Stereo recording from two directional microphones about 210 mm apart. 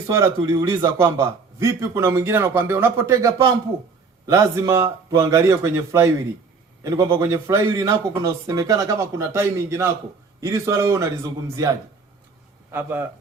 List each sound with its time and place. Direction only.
0.1 s a man's voice: 15° right (ahead or behind)
12.7 s a man's voice: 10° right (ahead or behind)